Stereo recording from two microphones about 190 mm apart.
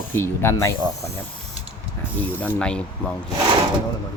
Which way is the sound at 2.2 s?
10° left (ahead or behind).